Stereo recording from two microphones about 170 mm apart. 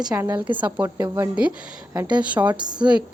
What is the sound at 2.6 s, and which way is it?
Speech, 25° right (ahead or behind).